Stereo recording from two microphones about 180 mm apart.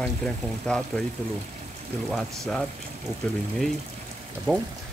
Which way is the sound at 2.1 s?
Centre (ahead or behind).